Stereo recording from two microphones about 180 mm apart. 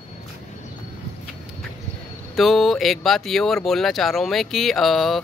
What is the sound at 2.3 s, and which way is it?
Speech, centre (ahead or behind).